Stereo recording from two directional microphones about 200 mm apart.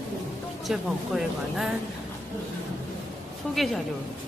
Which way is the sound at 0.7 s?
Centre (ahead or behind).